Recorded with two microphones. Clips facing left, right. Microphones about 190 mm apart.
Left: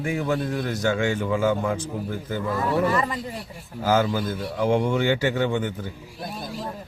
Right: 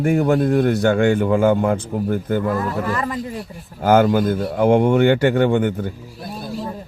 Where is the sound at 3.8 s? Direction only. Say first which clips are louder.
Right 7 dB; 55° right (ahead or behind).